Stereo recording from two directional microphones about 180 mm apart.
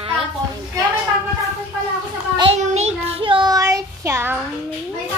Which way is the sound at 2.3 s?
25° right (ahead or behind).